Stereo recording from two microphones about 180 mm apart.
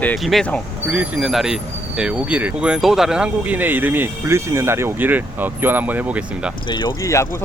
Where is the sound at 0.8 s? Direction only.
5° right (ahead or behind).